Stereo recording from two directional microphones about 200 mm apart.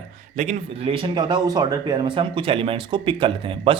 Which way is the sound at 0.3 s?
35° right (ahead or behind).